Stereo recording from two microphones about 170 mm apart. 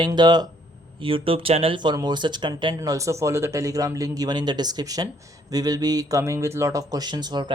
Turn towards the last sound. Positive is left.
turn(degrees=-25)  # may be behind; listen again after turning